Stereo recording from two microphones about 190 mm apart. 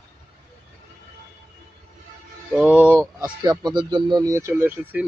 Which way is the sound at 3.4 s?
20° right (ahead or behind).